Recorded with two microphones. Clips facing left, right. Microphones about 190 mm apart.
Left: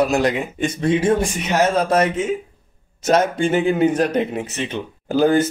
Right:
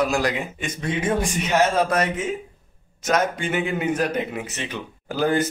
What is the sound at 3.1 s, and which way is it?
Speech, 30° left (ahead or behind).